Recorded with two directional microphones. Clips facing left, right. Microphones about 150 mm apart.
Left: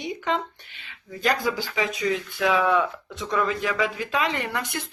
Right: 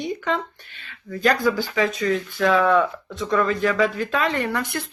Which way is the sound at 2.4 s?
15° left (ahead or behind).